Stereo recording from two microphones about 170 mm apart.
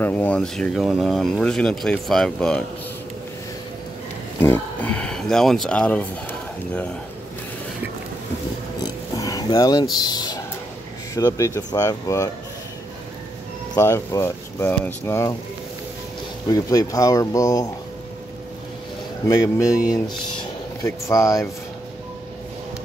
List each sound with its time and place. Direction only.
0.0 s speech: 10° left (ahead or behind)
4.4 s speech: 10° left (ahead or behind)
8.8 s a sound: 20° left (ahead or behind)
9.9 s speech: 25° left (ahead or behind)
13.7 s speech: 15° left (ahead or behind)
16.4 s speech: 20° left (ahead or behind)
19.2 s speech: 20° left (ahead or behind)